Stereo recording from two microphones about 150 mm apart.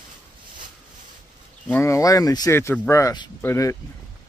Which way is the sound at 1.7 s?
20° left (ahead or behind).